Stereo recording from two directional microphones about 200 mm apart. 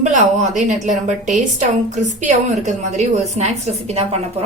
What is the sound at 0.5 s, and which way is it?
Speech, 35° right (ahead or behind).